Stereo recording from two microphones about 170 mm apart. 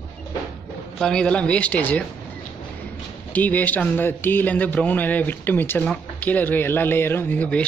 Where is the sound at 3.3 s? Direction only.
10° left (ahead or behind).